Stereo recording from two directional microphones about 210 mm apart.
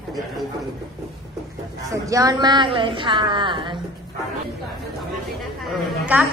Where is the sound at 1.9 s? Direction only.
15° right (ahead or behind).